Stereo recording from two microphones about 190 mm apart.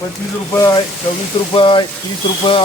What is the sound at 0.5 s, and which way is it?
Speech, 15° left (ahead or behind).